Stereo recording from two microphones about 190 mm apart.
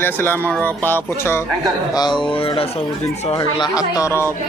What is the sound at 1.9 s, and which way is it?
Speech, 20° left (ahead or behind).